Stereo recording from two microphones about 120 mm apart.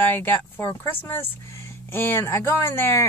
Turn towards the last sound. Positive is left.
turn(degrees=20)  # may be behind; listen again after turning